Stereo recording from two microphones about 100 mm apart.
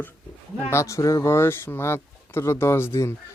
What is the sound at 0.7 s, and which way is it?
Speech, 30° left (ahead or behind).